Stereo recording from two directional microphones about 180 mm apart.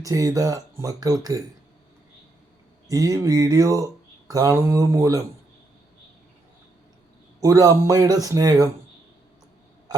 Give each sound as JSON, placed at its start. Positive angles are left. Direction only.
{"t": 0.0, "sound": "speech", "side_deg": -20}
{"t": 2.8, "sound": "speech", "side_deg": -20}
{"t": 7.4, "sound": "speech", "side_deg": -20}